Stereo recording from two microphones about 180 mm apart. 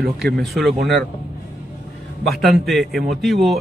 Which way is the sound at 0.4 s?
Centre (ahead or behind).